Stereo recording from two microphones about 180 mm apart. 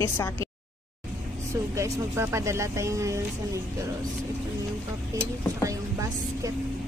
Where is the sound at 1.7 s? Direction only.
15° right (ahead or behind).